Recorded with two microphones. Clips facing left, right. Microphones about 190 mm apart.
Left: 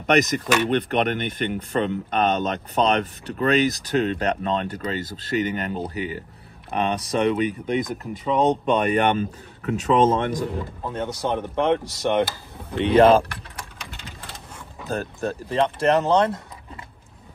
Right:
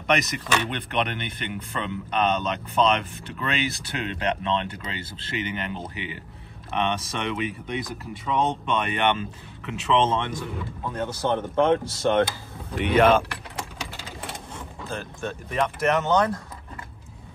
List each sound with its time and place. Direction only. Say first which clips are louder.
0.0 s speech: left 5 dB; 40° left (ahead or behind)
10.9 s speech: even; 15° left (ahead or behind)
12.7 s speech: left 4 dB; 30° left (ahead or behind)
14.9 s speech: left 6 dB; 40° left (ahead or behind)